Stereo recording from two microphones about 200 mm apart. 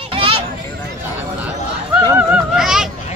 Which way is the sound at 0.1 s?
25° right (ahead or behind).